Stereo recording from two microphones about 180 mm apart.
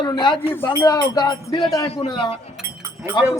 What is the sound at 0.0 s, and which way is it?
Speech, 25° left (ahead or behind).